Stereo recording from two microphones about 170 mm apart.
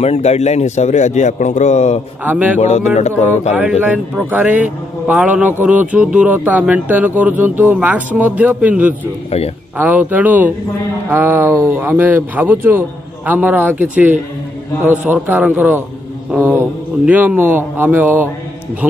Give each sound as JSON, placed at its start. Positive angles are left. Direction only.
{"t": 0.0, "sound": "a man's voice", "side_deg": 40}
{"t": 2.2, "sound": "speech", "side_deg": -10}
{"t": 2.6, "sound": "a man's voice", "side_deg": 40}
{"t": 3.8, "sound": "speech", "side_deg": -5}
{"t": 17.0, "sound": "speech", "side_deg": -10}